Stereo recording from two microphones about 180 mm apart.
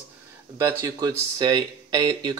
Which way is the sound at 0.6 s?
15° right (ahead or behind).